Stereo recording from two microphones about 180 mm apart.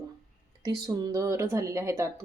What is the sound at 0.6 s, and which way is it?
Speech, 20° right (ahead or behind).